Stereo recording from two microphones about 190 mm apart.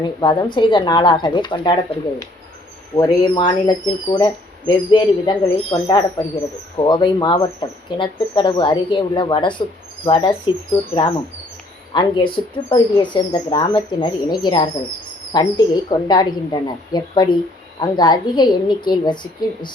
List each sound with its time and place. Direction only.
0.2 s speech: 25° left (ahead or behind)